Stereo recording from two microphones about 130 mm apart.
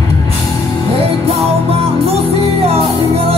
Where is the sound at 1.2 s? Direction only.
50° right (ahead or behind).